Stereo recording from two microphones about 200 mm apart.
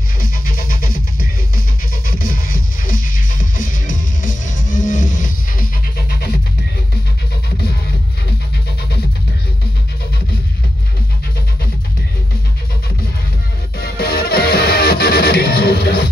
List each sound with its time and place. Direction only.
0.2 s music: 45° left (ahead or behind)
2.0 s music: 45° left (ahead or behind)
13.7 s music: 50° left (ahead or behind)